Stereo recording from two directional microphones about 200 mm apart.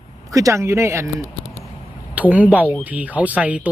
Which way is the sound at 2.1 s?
5° right (ahead or behind).